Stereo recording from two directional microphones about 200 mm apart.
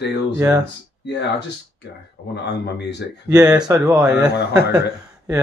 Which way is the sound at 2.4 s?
60° left (ahead or behind).